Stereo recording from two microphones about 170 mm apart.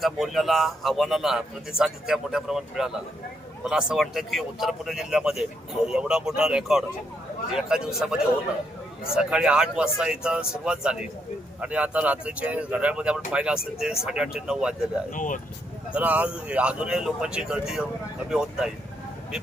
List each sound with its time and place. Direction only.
0.0 s a man's voice: centre (ahead or behind)
15.1 s speech: 50° left (ahead or behind)
15.9 s a man's voice: 10° right (ahead or behind)